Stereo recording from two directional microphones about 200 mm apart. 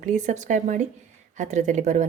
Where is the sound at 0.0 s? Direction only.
40° right (ahead or behind).